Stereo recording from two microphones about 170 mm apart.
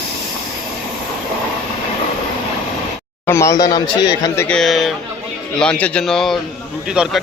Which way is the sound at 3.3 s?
15° left (ahead or behind).